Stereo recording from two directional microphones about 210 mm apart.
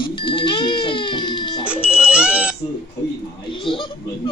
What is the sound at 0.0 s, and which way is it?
Music, 25° left (ahead or behind).